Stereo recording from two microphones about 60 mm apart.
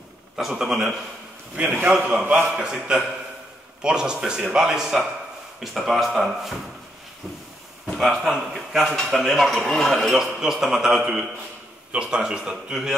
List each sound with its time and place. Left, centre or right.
0.4 s speech: centre
1.5 s a man's voice: centre
8.0 s speech: centre
10.1 s a man's voice: centre